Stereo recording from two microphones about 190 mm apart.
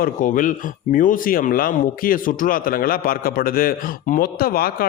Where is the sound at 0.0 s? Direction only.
45° left (ahead or behind).